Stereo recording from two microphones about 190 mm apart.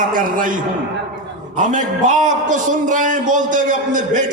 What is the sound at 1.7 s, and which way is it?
A man's voice, 40° right (ahead or behind).